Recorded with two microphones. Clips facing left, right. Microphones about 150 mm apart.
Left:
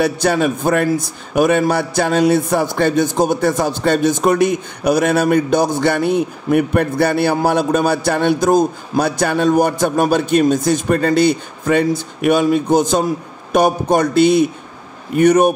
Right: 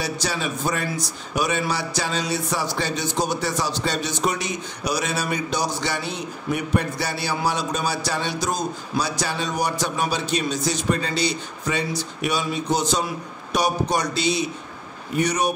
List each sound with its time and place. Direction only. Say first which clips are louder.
0.0 s a man's voice: left 11 dB; 55° left (ahead or behind)